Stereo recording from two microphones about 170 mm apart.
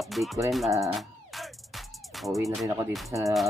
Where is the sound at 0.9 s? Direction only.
Centre (ahead or behind).